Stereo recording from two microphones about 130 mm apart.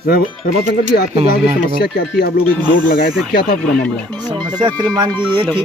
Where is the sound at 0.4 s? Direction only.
90° left.